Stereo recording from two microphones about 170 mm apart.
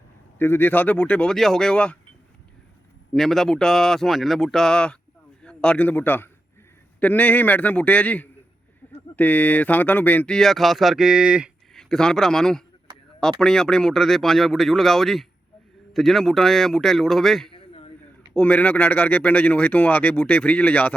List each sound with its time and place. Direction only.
0.3 s speech: 15° left (ahead or behind)
3.1 s a man's voice: centre (ahead or behind)
17.5 s a sound: 35° left (ahead or behind)
18.3 s speech: 10° left (ahead or behind)